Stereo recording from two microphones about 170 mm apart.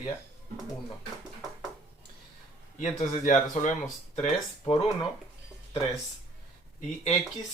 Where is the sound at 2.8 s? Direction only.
45° left (ahead or behind).